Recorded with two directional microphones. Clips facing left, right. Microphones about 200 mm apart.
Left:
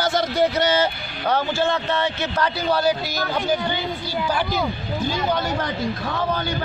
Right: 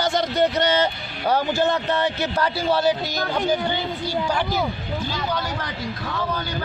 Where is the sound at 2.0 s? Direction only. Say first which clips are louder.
Right 1 dB; 30° right (ahead or behind).